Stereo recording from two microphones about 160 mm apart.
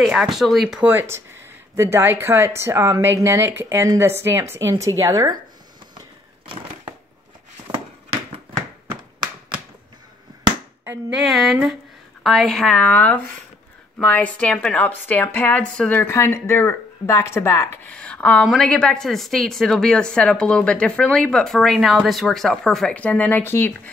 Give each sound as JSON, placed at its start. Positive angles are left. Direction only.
{"t": 0.0, "sound": "speech", "side_deg": -5}
{"t": 6.4, "sound": "crushing", "side_deg": -35}
{"t": 7.7, "sound": "a sound", "side_deg": -15}
{"t": 10.8, "sound": "a woman's voice", "side_deg": -10}